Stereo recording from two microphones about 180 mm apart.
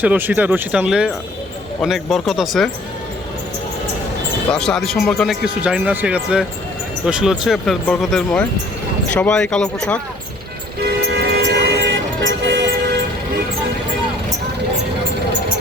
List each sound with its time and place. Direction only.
0.0 s speech: 10° right (ahead or behind)
4.5 s speech: 5° left (ahead or behind)
11.0 s vehicle: 65° right (ahead or behind)